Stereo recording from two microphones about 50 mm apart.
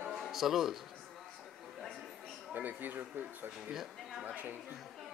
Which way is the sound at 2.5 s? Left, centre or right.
Right.